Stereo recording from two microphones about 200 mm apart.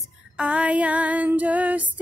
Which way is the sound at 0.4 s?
5° right (ahead or behind).